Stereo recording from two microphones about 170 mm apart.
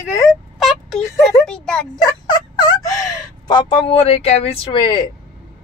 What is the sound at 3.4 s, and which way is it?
Speech, 30° left (ahead or behind).